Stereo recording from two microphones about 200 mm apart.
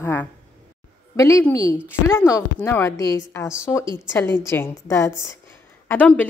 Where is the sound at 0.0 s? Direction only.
10° left (ahead or behind).